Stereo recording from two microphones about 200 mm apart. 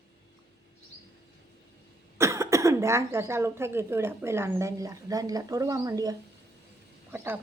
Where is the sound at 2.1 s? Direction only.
15° right (ahead or behind).